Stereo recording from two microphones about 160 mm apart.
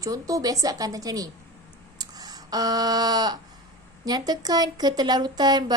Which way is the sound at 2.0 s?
25° right (ahead or behind).